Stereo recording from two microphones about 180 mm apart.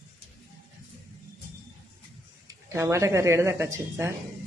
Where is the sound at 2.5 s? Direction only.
15° right (ahead or behind).